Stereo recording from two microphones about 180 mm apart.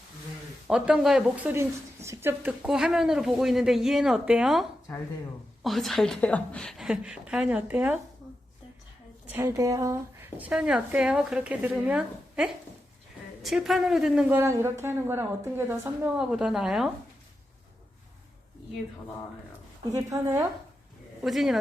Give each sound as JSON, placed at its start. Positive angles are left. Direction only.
{"t": 0.7, "sound": "speech", "side_deg": -5}
{"t": 1.5, "sound": "speech", "side_deg": -15}
{"t": 5.6, "sound": "speech", "side_deg": 0}
{"t": 9.3, "sound": "speech", "side_deg": -15}
{"t": 19.9, "sound": "speech", "side_deg": -15}
{"t": 21.2, "sound": "speech", "side_deg": 0}